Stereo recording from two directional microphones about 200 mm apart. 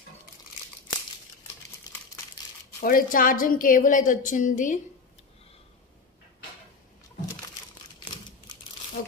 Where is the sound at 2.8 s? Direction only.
45° left (ahead or behind).